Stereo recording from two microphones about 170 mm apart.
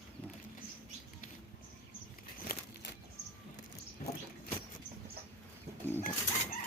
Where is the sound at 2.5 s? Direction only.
60° left (ahead or behind).